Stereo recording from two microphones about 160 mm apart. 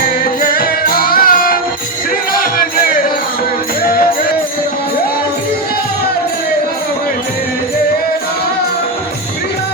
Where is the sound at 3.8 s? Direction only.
65° left (ahead or behind).